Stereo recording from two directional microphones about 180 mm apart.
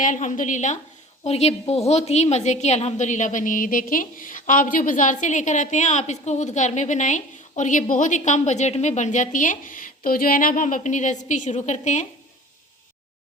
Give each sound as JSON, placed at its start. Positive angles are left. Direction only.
{"t": 0.0, "sound": "a woman's voice", "side_deg": 45}